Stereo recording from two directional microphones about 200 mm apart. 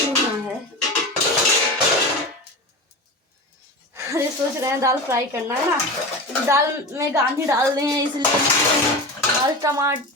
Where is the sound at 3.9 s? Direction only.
15° right (ahead or behind).